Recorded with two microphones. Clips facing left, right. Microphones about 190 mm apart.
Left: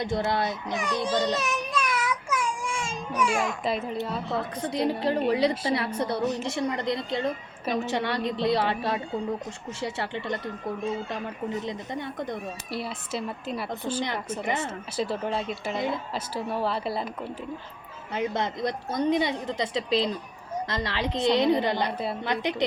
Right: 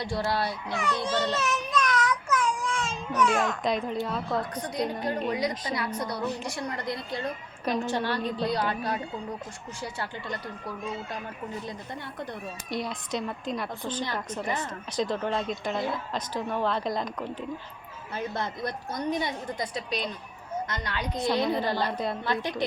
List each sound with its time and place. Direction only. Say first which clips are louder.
0.0 s a child's voice: left 2 dB; 20° left (ahead or behind); by 3.9 s 5° left (ahead or behind)
4.5 s a woman's voice: left 3 dB; 25° left (ahead or behind)
7.6 s a woman's voice: even; centre (ahead or behind)
7.9 s a woman's voice: left 1 dB; 20° left (ahead or behind)
12.7 s a woman's voice: right 2 dB; 5° left (ahead or behind)
14.4 s a woman's voice: left 3 dB; 25° left (ahead or behind)
14.9 s a woman's voice: right 1 dB; 5° left (ahead or behind)
18.1 s a woman's voice: left 4 dB; 20° left (ahead or behind)
21.9 s a woman's voice: even; 5° left (ahead or behind)
22.2 s a woman's voice: left 2 dB; 20° left (ahead or behind)